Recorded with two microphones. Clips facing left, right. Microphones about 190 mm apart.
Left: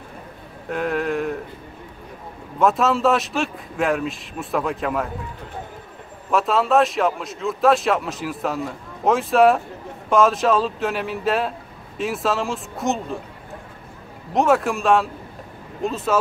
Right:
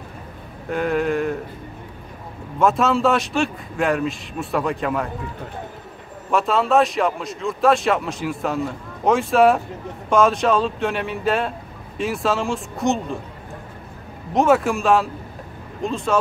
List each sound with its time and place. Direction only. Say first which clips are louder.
0.7 s speech: right 2 dB; centre (ahead or behind)
2.6 s speech: even; centre (ahead or behind)
6.3 s speech: even; centre (ahead or behind)
14.3 s speech: right 1 dB; centre (ahead or behind)